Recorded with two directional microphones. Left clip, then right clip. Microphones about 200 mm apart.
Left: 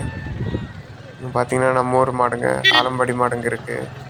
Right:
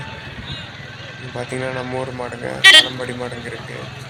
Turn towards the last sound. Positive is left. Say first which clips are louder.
# left 8 dB
turn(degrees=10)  # may be behind; listen again after turning